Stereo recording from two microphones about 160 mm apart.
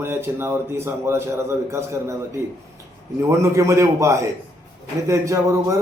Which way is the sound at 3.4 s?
20° right (ahead or behind).